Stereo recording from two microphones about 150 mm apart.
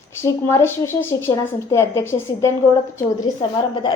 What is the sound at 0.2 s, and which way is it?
A woman's voice, 20° left (ahead or behind).